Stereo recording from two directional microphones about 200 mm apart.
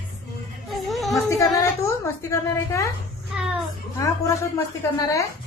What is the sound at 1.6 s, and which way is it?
A woman's voice, 15° left (ahead or behind).